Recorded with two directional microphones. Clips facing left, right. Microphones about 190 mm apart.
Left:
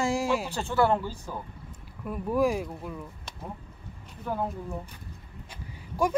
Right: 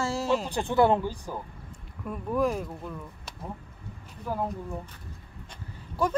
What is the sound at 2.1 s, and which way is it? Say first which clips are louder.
Speech: left 2 dB; 10° left (ahead or behind).